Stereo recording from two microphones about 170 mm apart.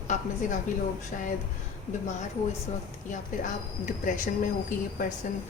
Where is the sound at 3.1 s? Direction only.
50° left (ahead or behind).